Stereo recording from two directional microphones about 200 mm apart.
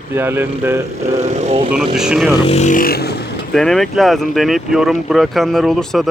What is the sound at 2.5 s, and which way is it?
Speech, 35° left (ahead or behind).